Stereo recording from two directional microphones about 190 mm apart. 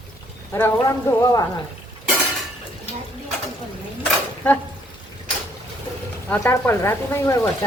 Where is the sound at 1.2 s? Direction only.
20° left (ahead or behind).